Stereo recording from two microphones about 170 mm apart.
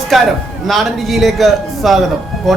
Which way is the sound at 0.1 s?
Centre (ahead or behind).